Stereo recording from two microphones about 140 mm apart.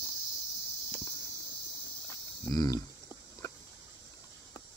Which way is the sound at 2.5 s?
25° left (ahead or behind).